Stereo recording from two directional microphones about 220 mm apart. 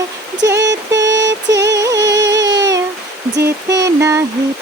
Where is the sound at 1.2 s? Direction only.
55° right (ahead or behind).